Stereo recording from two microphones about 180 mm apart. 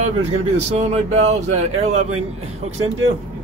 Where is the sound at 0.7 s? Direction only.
40° right (ahead or behind).